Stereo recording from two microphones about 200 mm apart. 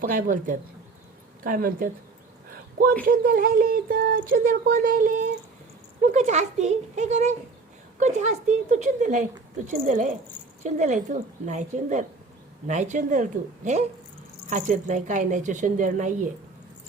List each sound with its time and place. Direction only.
0.0 s speech: 45° right (ahead or behind)
3.0 s a woman's voice: 45° right (ahead or behind)